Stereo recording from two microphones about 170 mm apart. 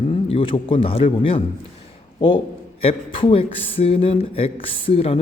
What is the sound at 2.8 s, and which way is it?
A man's voice, 35° left (ahead or behind).